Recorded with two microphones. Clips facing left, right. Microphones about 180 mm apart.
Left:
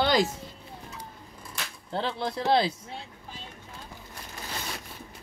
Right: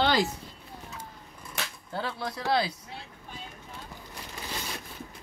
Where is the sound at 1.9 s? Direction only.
25° left (ahead or behind).